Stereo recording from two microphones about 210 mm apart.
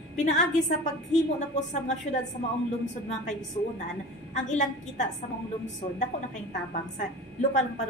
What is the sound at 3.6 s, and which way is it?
A woman's voice, 30° left (ahead or behind).